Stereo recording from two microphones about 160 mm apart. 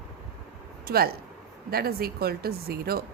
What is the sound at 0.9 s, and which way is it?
A woman's voice, 70° right (ahead or behind).